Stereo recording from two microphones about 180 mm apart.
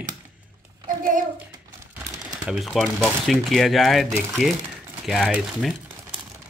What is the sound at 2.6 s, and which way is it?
Speech, centre (ahead or behind).